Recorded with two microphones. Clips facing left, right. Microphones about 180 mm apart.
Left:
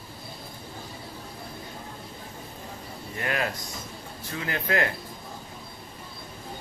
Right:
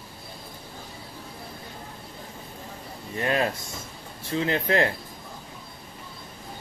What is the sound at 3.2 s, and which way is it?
Speech, 25° right (ahead or behind).